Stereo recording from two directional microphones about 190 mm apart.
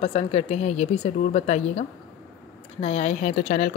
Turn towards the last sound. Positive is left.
turn(degrees=40)  # may be behind; listen again after turning